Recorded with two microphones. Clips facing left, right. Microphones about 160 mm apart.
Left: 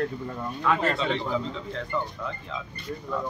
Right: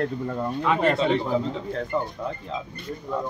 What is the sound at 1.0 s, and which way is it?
Speech, 40° right (ahead or behind).